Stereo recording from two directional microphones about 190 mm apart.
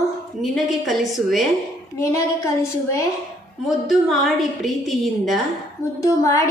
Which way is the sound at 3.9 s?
Centre (ahead or behind).